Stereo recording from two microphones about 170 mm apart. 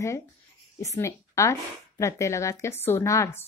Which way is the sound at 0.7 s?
20° left (ahead or behind).